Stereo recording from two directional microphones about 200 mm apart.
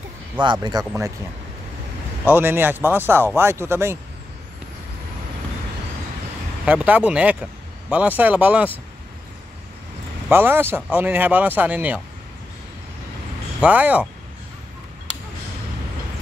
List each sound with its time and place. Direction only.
0.4 s speech: 20° right (ahead or behind)
2.2 s speech: 10° right (ahead or behind)
6.6 s speech: 5° right (ahead or behind)
10.3 s speech: 10° right (ahead or behind)
13.6 s speech: 10° right (ahead or behind)